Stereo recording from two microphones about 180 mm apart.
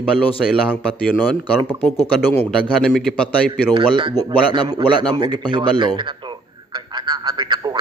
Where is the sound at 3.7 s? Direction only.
25° right (ahead or behind).